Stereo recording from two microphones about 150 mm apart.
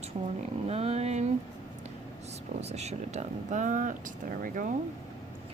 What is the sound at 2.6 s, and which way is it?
Speech, 45° right (ahead or behind).